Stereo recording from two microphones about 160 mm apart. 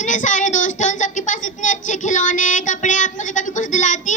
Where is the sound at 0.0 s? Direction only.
50° left (ahead or behind).